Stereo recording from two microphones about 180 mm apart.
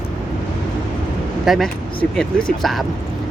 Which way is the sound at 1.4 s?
Centre (ahead or behind).